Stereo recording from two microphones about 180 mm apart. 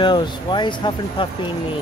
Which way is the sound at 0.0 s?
25° left (ahead or behind).